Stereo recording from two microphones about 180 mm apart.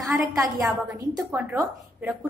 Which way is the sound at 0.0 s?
Centre (ahead or behind).